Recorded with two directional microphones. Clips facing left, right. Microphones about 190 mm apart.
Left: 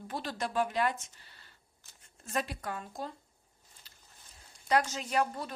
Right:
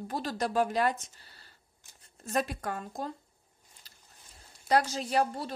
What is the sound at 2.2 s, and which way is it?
Speech, 45° right (ahead or behind).